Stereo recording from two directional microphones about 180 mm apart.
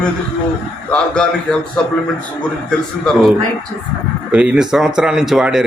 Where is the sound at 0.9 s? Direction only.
5° left (ahead or behind).